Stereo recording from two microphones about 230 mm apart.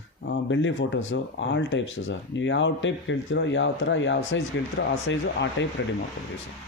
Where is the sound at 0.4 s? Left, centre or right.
Left.